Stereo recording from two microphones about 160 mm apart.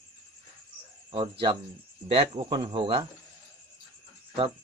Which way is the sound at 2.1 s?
30° right (ahead or behind).